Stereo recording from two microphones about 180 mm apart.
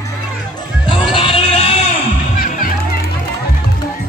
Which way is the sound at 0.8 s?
25° left (ahead or behind).